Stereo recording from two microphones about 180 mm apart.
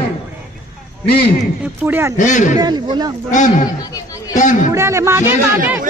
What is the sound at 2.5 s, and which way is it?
Speech, 25° right (ahead or behind).